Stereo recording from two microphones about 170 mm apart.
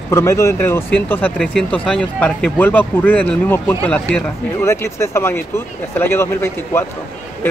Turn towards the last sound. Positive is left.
turn(degrees=15)  # may be behind; listen again after turning